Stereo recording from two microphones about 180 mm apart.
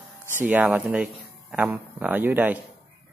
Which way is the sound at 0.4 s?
10° right (ahead or behind).